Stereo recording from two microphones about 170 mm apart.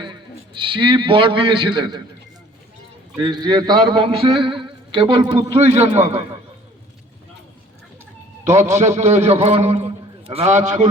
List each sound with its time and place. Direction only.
0.0 s a man's voice: 30° right (ahead or behind)
3.2 s a man's voice: 25° right (ahead or behind)
9.0 s a man's voice: 40° right (ahead or behind)